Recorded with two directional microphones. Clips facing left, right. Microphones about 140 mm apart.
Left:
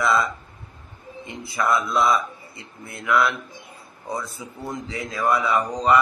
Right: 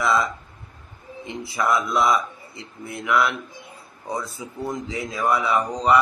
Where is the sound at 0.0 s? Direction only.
20° right (ahead or behind).